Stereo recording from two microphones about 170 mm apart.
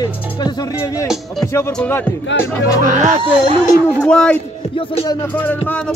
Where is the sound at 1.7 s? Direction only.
10° left (ahead or behind).